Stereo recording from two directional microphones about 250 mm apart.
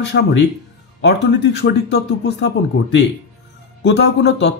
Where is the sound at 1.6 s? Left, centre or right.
Left.